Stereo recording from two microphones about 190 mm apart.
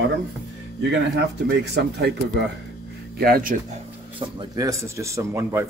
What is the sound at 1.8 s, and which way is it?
Speech, 65° right (ahead or behind).